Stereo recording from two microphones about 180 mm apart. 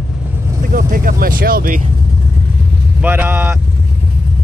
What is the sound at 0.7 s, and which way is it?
Speech, 50° right (ahead or behind).